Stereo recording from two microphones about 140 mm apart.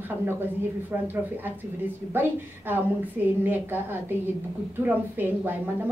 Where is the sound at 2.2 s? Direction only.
15° right (ahead or behind).